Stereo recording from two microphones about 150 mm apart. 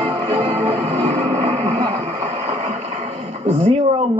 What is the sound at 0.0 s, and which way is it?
Music, 40° right (ahead or behind).